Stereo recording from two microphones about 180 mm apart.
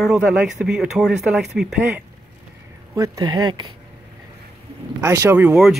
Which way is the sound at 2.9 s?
20° right (ahead or behind).